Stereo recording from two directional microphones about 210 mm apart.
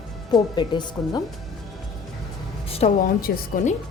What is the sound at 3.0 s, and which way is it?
Speech, 40° left (ahead or behind).